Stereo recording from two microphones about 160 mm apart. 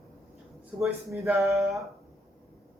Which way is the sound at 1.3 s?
15° right (ahead or behind).